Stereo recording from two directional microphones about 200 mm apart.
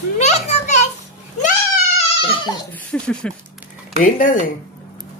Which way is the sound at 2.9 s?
5° left (ahead or behind).